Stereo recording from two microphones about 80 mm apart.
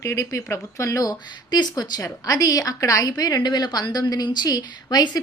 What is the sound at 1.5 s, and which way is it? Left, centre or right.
A woman's voice, left.